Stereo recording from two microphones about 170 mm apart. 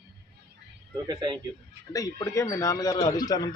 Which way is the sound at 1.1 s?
25° right (ahead or behind).